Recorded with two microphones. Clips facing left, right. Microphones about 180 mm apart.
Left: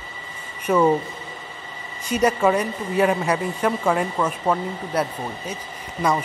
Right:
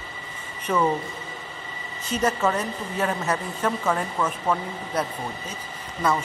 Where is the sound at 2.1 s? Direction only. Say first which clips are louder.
Left 5 dB; 10° left (ahead or behind).